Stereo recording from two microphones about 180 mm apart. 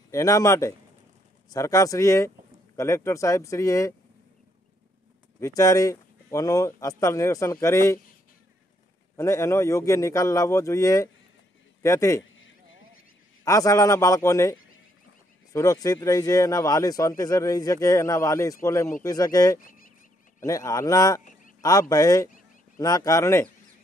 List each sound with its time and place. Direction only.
0.1 s speech: 20° left (ahead or behind)
5.4 s speech: 20° left (ahead or behind)
9.1 s speech: 15° left (ahead or behind)
12.4 s a sound: 90° left
13.4 s speech: 20° left (ahead or behind)
21.2 s a sound: 45° left (ahead or behind)
21.6 s speech: 20° left (ahead or behind)